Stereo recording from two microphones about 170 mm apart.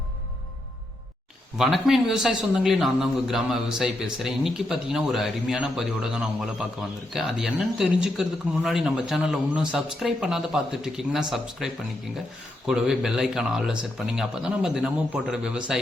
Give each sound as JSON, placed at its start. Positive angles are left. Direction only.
{"t": 1.5, "sound": "speech", "side_deg": 0}